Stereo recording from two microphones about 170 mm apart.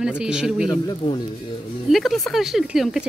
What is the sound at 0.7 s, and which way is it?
Speech, 25° left (ahead or behind).